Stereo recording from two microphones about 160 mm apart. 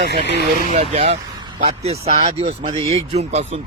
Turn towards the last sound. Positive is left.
turn(degrees=-40)  # may be behind; listen again after turning